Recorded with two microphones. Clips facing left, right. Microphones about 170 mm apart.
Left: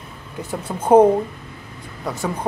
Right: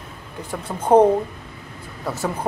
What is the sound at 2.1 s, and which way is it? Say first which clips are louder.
Speech: even; 5° right (ahead or behind).